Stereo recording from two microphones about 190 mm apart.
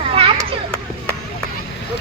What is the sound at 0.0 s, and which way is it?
Children playing, 30° right (ahead or behind).